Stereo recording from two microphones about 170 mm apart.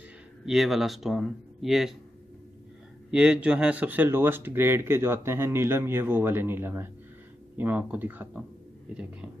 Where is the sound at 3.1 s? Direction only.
5° right (ahead or behind).